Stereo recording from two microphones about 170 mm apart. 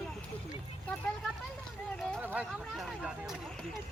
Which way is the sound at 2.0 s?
5° left (ahead or behind).